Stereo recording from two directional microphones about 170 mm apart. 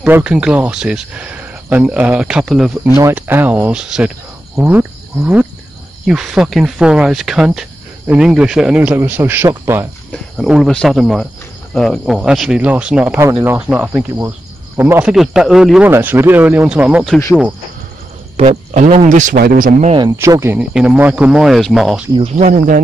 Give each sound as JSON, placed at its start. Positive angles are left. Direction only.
{"t": 0.0, "sound": "speech", "side_deg": -10}
{"t": 4.6, "sound": "cricket", "side_deg": -10}
{"t": 6.0, "sound": "speech", "side_deg": -5}
{"t": 10.3, "sound": "speech", "side_deg": 0}
{"t": 15.1, "sound": "speech", "side_deg": 0}
{"t": 18.3, "sound": "speech", "side_deg": -40}
{"t": 19.9, "sound": "speech", "side_deg": -25}
{"t": 22.4, "sound": "speech", "side_deg": -50}